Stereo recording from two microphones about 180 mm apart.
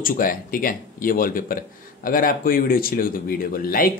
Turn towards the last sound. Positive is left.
turn(degrees=55)  # may be behind; listen again after turning